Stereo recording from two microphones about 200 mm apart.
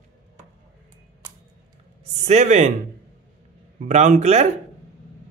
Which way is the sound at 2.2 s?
35° right (ahead or behind).